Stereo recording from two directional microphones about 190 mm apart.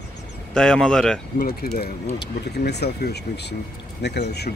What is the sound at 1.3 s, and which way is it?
Speech, 50° left (ahead or behind).